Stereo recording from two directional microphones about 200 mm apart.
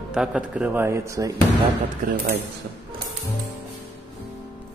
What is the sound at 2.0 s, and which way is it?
Speech, 45° right (ahead or behind).